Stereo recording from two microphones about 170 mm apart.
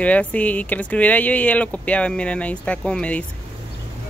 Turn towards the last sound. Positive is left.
turn(degrees=5)  # may be behind; listen again after turning